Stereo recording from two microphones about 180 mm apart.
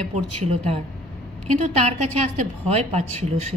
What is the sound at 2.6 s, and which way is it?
Speech, 35° right (ahead or behind).